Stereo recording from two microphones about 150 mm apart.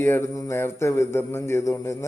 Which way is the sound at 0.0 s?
15° left (ahead or behind).